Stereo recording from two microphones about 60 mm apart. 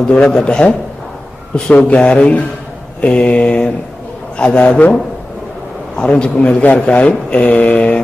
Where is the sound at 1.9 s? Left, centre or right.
Centre.